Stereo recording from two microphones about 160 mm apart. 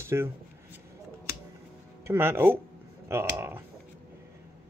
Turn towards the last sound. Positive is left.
turn(degrees=-15)  # may be behind; listen again after turning